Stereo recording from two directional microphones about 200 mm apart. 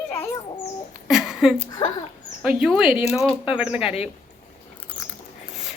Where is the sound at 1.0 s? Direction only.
Centre (ahead or behind).